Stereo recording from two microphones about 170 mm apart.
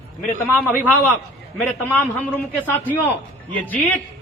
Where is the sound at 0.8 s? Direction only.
10° left (ahead or behind).